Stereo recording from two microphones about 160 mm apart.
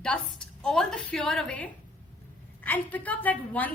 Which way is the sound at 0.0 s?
5° left (ahead or behind).